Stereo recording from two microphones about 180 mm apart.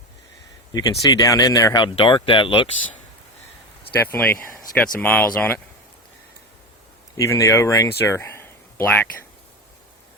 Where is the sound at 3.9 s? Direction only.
10° left (ahead or behind).